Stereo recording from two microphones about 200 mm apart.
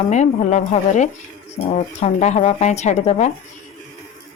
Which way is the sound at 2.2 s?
35° left (ahead or behind).